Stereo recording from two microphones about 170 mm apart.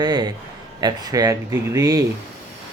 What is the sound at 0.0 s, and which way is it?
Speech, 25° right (ahead or behind).